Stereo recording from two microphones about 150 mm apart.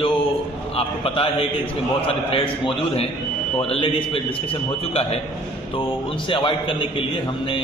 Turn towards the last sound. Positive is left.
turn(degrees=35)  # may be behind; listen again after turning